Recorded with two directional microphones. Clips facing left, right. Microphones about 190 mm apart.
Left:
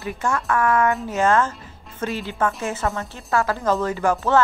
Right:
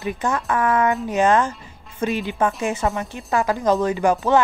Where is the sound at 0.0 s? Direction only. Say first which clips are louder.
Right 1 dB; 20° right (ahead or behind).